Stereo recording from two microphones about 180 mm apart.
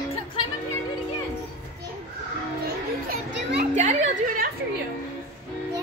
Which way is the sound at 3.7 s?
40° right (ahead or behind).